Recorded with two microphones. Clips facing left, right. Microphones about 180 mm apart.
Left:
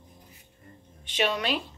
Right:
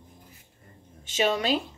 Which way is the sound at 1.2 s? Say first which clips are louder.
Right 3 dB; 35° right (ahead or behind).